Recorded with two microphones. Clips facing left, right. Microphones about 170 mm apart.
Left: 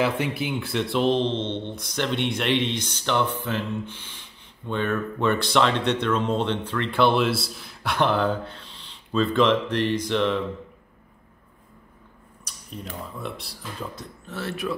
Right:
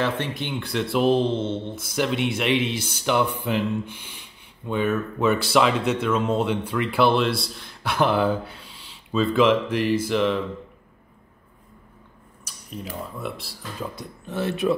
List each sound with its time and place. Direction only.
0.0 s speech: 10° left (ahead or behind)
12.4 s speech: centre (ahead or behind)
13.9 s speech: 15° right (ahead or behind)